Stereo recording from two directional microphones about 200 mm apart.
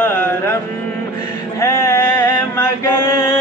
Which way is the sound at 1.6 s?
15° left (ahead or behind).